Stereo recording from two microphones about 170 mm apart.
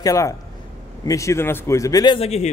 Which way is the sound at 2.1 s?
40° left (ahead or behind).